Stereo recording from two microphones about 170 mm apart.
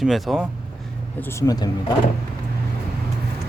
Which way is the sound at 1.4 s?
20° left (ahead or behind).